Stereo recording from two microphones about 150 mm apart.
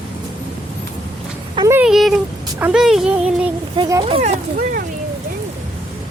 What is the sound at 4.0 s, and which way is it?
Speech, 45° right (ahead or behind).